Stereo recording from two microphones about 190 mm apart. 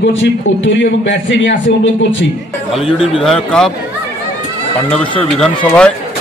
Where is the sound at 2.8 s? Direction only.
30° left (ahead or behind).